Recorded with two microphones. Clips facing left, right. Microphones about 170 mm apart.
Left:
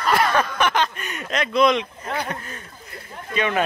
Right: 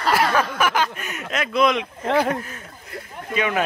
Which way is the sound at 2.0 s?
90° right.